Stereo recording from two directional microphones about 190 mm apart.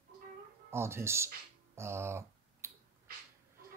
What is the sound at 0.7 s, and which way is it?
Speech, 15° right (ahead or behind).